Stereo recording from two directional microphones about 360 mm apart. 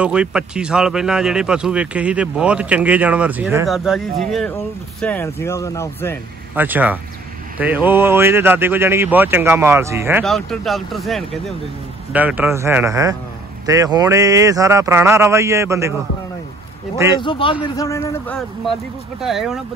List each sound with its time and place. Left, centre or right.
0.0 s speech: centre
6.5 s speech: centre
17.2 s speech: centre